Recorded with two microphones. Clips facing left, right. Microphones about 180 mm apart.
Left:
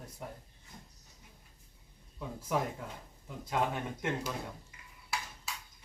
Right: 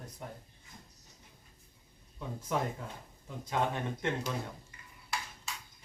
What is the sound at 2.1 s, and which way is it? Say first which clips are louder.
Speech: even; 5° left (ahead or behind).